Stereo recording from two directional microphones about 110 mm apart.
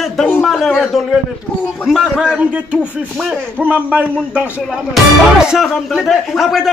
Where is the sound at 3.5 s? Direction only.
15° right (ahead or behind).